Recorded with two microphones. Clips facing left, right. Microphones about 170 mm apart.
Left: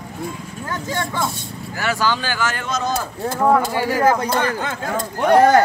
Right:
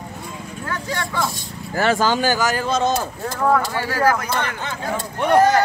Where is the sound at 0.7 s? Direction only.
20° left (ahead or behind).